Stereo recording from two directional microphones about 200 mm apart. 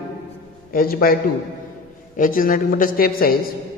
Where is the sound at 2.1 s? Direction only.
45° left (ahead or behind).